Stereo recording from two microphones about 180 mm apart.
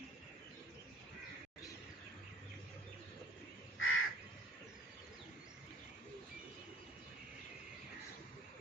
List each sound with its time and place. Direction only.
3.8 s crow: 90° left